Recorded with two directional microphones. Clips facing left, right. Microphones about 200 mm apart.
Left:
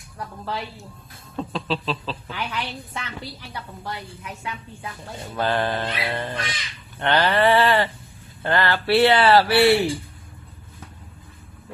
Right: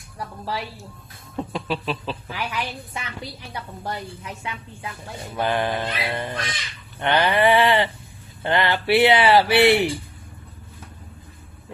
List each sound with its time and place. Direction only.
1.3 s speech: 15° right (ahead or behind)
5.3 s speech: 15° right (ahead or behind)